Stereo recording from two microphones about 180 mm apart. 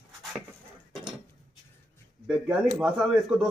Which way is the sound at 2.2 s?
5° right (ahead or behind).